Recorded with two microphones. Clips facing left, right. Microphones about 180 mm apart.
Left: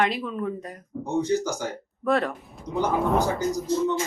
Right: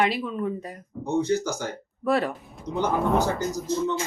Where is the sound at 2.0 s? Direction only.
5° right (ahead or behind).